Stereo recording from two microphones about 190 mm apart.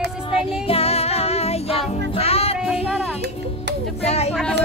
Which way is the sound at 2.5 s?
5° right (ahead or behind).